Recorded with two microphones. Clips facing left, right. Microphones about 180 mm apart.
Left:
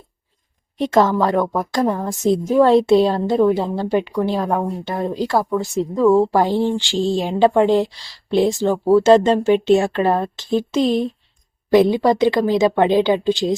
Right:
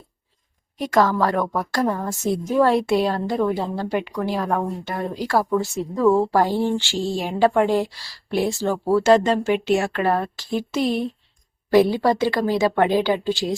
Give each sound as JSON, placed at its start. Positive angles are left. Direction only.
{"t": 0.8, "sound": "a woman's voice", "side_deg": 25}